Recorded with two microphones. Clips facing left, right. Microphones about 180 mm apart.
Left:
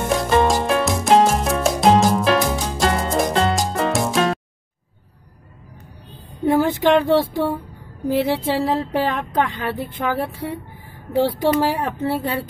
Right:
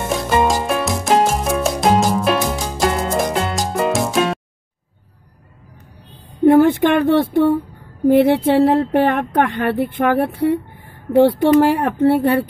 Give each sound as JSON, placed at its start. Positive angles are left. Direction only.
{"t": 0.4, "sound": "music", "side_deg": 0}
{"t": 6.4, "sound": "speech", "side_deg": -55}